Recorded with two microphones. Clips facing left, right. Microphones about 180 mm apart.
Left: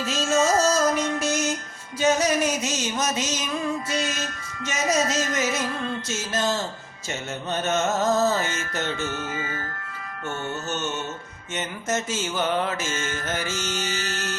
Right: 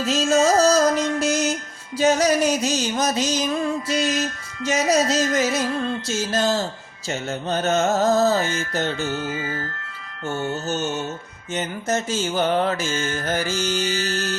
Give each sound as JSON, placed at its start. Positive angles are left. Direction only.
{"t": 0.0, "sound": "music", "side_deg": -40}
{"t": 2.0, "sound": "mantra", "side_deg": -35}
{"t": 4.6, "sound": "mantra", "side_deg": -35}